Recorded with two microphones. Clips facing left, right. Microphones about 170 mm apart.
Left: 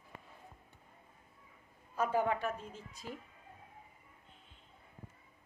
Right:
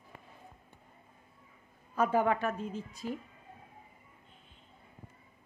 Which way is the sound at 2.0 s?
85° right.